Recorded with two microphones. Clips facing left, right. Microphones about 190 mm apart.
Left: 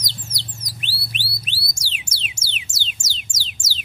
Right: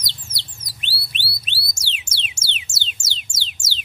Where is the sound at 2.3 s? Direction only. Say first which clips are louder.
Even; 25° right (ahead or behind).